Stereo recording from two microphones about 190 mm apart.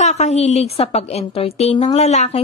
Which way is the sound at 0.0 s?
35° left (ahead or behind).